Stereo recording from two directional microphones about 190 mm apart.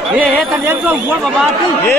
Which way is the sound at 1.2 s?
5° left (ahead or behind).